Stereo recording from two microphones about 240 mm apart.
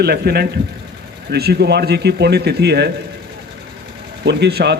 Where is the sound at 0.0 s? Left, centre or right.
Right.